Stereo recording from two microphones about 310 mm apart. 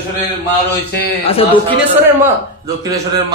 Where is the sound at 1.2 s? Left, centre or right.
Centre.